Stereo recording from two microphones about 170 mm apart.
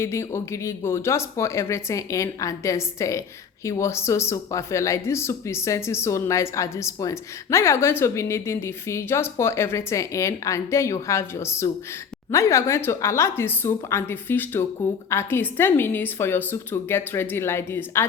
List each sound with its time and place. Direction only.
0.0 s speech: 15° left (ahead or behind)